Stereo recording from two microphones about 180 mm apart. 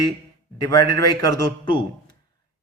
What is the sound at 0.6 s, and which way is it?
Speech, 20° left (ahead or behind).